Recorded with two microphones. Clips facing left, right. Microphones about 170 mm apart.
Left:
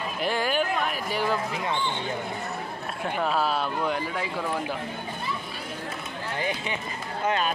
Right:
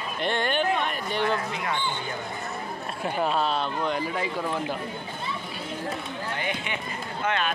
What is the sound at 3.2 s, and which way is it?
Speech, 5° left (ahead or behind).